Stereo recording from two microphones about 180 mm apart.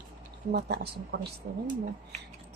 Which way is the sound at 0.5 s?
65° right (ahead or behind).